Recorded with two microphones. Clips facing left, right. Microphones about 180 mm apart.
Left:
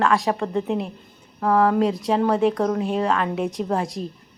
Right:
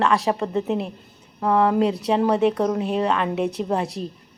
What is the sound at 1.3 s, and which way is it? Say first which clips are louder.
Speech: even; 20° right (ahead or behind).